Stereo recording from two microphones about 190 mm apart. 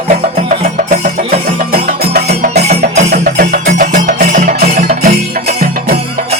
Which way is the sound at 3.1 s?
50° right (ahead or behind).